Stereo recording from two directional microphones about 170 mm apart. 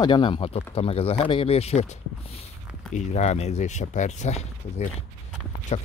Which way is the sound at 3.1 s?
40° left (ahead or behind).